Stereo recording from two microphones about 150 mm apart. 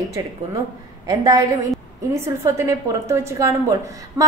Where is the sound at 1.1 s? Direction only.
20° right (ahead or behind).